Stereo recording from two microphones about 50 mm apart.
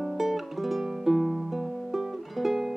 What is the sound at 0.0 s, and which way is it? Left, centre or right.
Music, centre.